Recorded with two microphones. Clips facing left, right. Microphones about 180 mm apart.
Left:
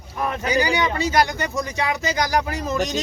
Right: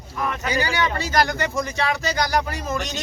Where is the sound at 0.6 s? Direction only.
15° left (ahead or behind).